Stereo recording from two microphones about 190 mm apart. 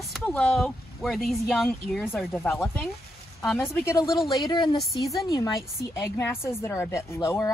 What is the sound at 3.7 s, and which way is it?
Speech, 15° left (ahead or behind).